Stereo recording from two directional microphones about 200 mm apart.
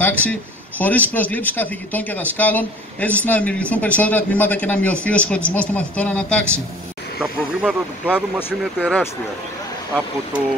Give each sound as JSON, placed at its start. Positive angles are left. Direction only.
{"t": 0.0, "sound": "a man's voice", "side_deg": 10}
{"t": 7.2, "sound": "speech", "side_deg": -5}